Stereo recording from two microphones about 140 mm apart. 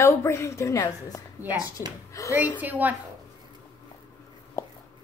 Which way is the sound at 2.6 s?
10° right (ahead or behind).